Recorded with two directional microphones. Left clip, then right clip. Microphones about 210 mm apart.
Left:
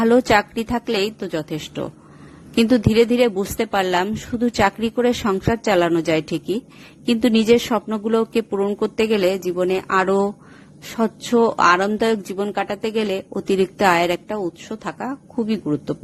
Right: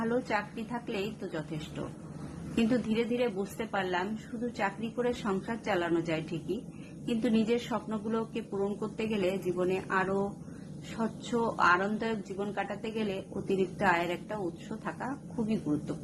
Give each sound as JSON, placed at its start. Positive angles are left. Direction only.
{"t": 0.0, "sound": "speech", "side_deg": 55}